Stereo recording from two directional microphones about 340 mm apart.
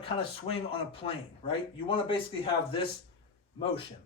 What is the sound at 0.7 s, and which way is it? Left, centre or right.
Speech, centre.